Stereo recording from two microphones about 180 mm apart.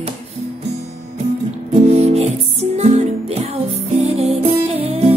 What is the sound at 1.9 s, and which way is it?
Music, 35° right (ahead or behind).